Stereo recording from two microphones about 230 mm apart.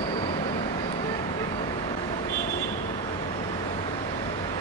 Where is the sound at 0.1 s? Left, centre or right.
Centre.